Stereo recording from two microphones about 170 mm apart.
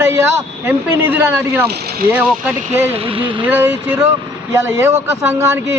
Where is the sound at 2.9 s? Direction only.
30° right (ahead or behind).